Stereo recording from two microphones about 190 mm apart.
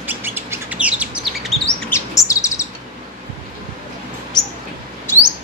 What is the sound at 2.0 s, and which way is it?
Chirp, 15° left (ahead or behind).